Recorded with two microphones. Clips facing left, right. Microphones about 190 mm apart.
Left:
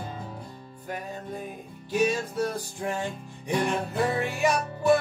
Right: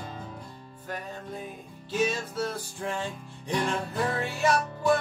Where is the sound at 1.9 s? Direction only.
15° left (ahead or behind).